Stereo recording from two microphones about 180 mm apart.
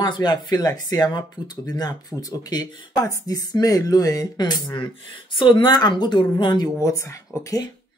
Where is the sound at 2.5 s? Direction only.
20° left (ahead or behind).